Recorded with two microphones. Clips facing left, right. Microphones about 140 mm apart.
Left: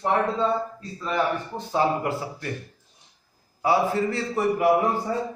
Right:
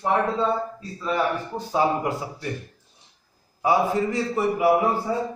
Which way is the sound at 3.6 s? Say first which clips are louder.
Right 1 dB; 15° right (ahead or behind).